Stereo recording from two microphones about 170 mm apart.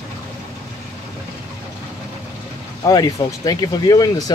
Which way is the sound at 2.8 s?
20° left (ahead or behind).